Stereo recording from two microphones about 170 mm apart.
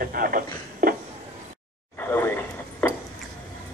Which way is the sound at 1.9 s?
10° left (ahead or behind).